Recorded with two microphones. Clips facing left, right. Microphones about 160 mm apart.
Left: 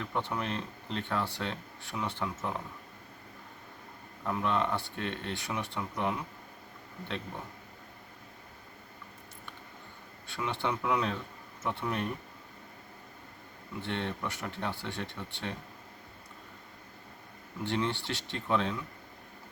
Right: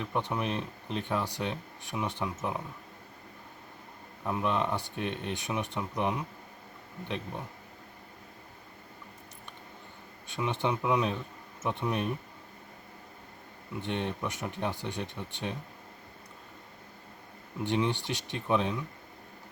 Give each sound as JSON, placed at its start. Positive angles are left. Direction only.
{"t": 0.0, "sound": "speech", "side_deg": -15}
{"t": 4.2, "sound": "speech", "side_deg": -15}
{"t": 10.2, "sound": "speech", "side_deg": -20}
{"t": 13.8, "sound": "speech", "side_deg": -15}
{"t": 17.6, "sound": "speech", "side_deg": -15}